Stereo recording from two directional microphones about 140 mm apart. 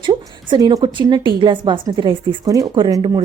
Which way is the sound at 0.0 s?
35° right (ahead or behind).